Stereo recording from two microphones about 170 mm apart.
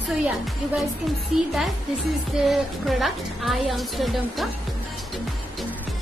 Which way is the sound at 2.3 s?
Centre (ahead or behind).